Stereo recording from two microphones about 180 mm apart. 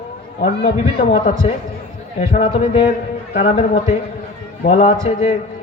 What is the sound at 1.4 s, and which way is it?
A man's voice, 35° left (ahead or behind).